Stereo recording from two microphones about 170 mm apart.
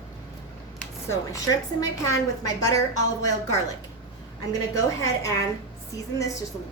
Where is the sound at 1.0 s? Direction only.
15° left (ahead or behind).